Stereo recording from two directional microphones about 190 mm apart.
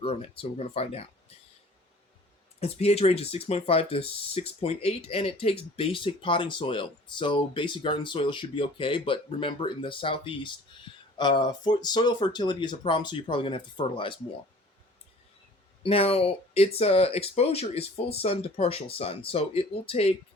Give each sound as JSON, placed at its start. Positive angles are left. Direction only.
{"t": 0.0, "sound": "speech", "side_deg": 30}
{"t": 2.6, "sound": "speech", "side_deg": 35}
{"t": 15.8, "sound": "speech", "side_deg": 30}